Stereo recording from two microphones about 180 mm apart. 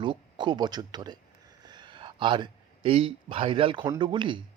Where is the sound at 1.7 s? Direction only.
25° right (ahead or behind).